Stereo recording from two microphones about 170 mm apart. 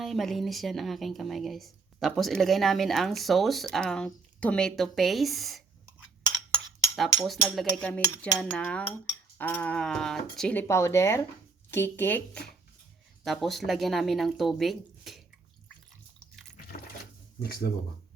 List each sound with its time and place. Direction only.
0.0 s speech: centre (ahead or behind)
6.9 s speech: centre (ahead or behind)
13.2 s speech: centre (ahead or behind)
17.4 s speech: 60° left (ahead or behind)